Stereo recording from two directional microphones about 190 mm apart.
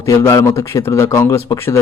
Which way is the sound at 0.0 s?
15° left (ahead or behind).